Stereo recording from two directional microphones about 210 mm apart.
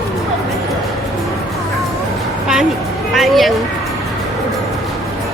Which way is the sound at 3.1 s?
Centre (ahead or behind).